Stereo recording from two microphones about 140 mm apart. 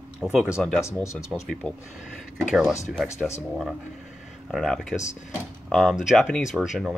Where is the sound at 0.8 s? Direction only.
20° left (ahead or behind).